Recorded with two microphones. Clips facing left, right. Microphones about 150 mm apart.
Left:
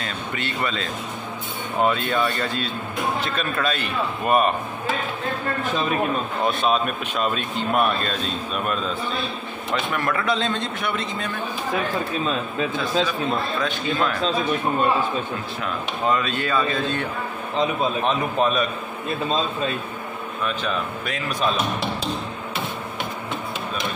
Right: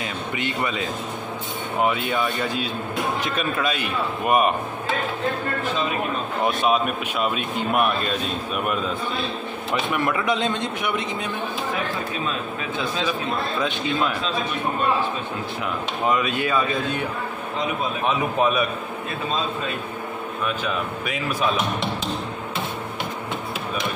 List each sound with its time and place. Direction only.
0.0 s a man's voice: 15° right (ahead or behind)
6.4 s a man's voice: 10° right (ahead or behind)
9.9 s a man's voice: 15° right (ahead or behind)
13.6 s a man's voice: 15° right (ahead or behind)
16.1 s a man's voice: 10° right (ahead or behind)
20.4 s a man's voice: 10° right (ahead or behind)